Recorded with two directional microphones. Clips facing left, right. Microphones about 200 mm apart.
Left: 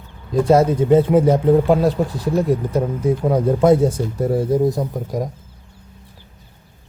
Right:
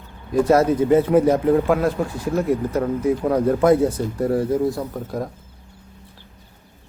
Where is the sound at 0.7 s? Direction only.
25° left (ahead or behind).